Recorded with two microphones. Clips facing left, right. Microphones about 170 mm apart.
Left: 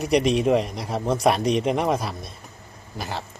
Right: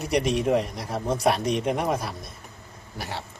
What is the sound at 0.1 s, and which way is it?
Speech, 65° left (ahead or behind).